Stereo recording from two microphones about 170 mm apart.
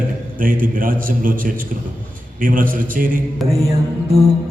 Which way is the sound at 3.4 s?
Centre (ahead or behind).